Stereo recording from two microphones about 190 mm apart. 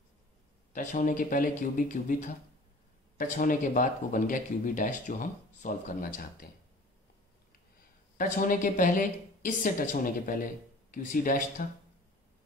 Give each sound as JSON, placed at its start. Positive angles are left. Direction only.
{"t": 0.7, "sound": "a woman's voice", "side_deg": 45}
{"t": 8.2, "sound": "a woman's voice", "side_deg": 45}